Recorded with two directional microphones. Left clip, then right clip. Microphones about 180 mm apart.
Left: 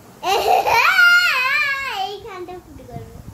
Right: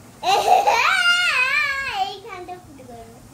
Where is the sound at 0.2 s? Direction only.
15° left (ahead or behind).